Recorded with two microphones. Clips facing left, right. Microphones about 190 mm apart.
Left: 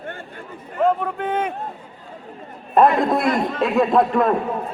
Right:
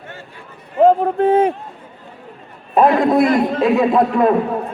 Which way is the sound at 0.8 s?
30° right (ahead or behind).